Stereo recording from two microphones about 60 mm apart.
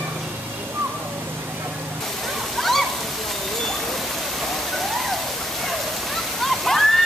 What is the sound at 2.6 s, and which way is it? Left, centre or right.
Waterfall, centre.